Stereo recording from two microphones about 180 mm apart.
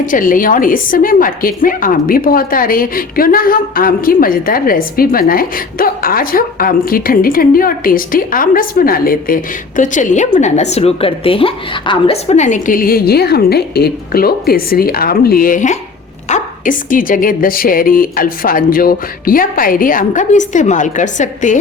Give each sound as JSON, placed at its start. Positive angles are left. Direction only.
{"t": 0.0, "sound": "a woman's voice", "side_deg": 50}